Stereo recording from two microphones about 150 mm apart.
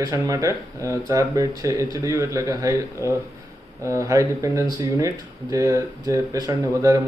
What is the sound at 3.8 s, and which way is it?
Speech, 20° right (ahead or behind).